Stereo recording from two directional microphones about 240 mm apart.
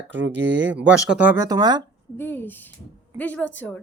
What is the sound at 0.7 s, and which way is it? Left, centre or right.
A woman's voice, centre.